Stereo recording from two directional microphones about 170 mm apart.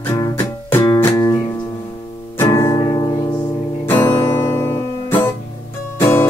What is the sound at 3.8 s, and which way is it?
Music, 10° left (ahead or behind).